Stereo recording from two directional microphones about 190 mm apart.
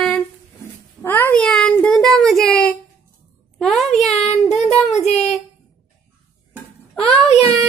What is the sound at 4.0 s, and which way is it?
Child singing, centre (ahead or behind).